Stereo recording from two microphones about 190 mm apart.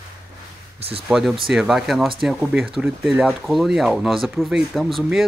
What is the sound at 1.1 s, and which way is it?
Speech, centre (ahead or behind).